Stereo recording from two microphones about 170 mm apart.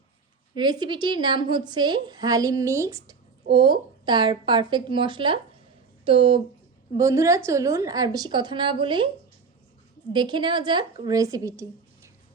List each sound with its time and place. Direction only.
0.5 s a woman's voice: 25° right (ahead or behind)
6.9 s a woman's voice: 20° right (ahead or behind)
10.1 s a woman's voice: 25° right (ahead or behind)